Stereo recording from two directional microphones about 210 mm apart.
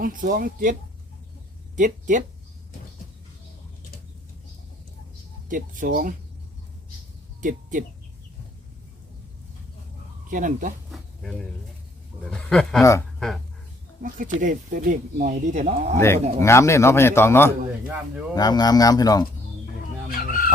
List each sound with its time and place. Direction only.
0.0 s speech: 40° right (ahead or behind)
5.5 s speech: 40° right (ahead or behind)
7.4 s speech: 40° right (ahead or behind)
10.2 s speech: 40° right (ahead or behind)
10.9 s a sound: centre (ahead or behind)
12.2 s speech: 5° left (ahead or behind)
14.0 s speech: 40° right (ahead or behind)
16.0 s speech: 10° left (ahead or behind)
20.1 s chicken: 45° left (ahead or behind)